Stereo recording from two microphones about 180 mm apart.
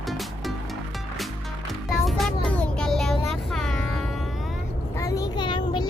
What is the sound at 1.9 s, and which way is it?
Music, centre (ahead or behind).